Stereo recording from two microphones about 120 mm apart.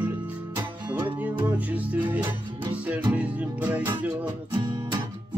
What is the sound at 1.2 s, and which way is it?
Music, 15° right (ahead or behind).